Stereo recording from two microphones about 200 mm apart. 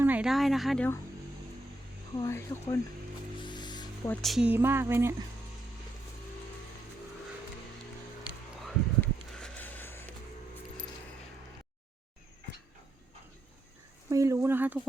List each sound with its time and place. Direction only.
0.0 s a sound: 5° right (ahead or behind)
2.1 s speech: 15° left (ahead or behind)
3.3 s music: 20° left (ahead or behind)
4.1 s speech: centre (ahead or behind)
9.0 s sniff: 5° left (ahead or behind)
14.1 s a sound: 15° right (ahead or behind)